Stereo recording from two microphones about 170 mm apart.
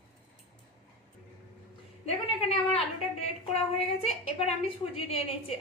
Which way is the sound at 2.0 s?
35° left (ahead or behind).